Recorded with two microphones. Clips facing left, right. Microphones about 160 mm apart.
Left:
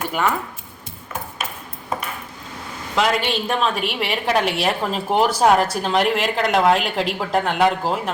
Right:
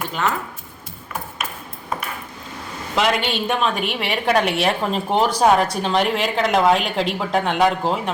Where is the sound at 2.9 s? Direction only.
Centre (ahead or behind).